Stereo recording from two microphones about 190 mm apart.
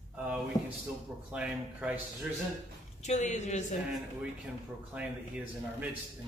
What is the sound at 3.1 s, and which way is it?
Speech, 40° left (ahead or behind).